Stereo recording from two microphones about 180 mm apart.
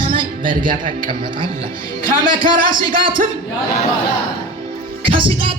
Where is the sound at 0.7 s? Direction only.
50° right (ahead or behind).